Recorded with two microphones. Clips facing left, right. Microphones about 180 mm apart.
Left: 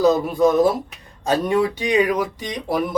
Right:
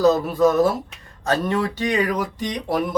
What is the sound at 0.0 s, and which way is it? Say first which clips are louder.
Speech: even; 10° left (ahead or behind).